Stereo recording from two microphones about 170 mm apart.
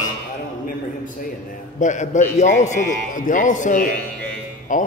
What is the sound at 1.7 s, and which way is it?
A man's voice, 45° left (ahead or behind).